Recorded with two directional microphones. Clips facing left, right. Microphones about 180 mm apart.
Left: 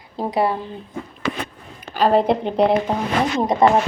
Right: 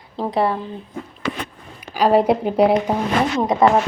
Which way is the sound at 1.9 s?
10° right (ahead or behind).